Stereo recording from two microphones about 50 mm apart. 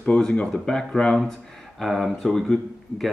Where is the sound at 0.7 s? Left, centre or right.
Centre.